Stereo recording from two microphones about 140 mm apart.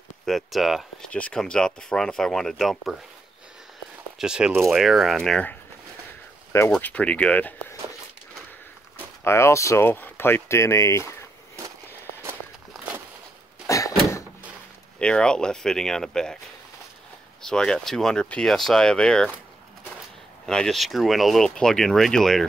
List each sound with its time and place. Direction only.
0.2 s speech: centre (ahead or behind)
4.2 s speech: 5° right (ahead or behind)
6.7 s speech: 10° left (ahead or behind)
8.9 s speech: 20° left (ahead or behind)
13.7 s door: 25° left (ahead or behind)
15.0 s speech: 5° left (ahead or behind)
17.4 s speech: 5° left (ahead or behind)
20.4 s speech: 5° left (ahead or behind)